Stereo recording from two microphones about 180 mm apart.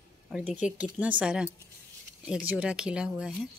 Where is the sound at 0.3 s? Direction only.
5° right (ahead or behind).